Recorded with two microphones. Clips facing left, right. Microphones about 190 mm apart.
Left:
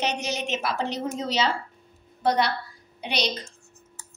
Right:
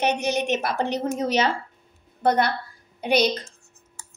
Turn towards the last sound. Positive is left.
turn(degrees=-50)  # may be behind; listen again after turning